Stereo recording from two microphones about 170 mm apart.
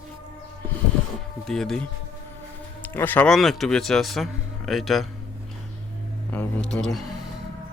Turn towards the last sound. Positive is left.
turn(degrees=0)  # may be behind; listen again after turning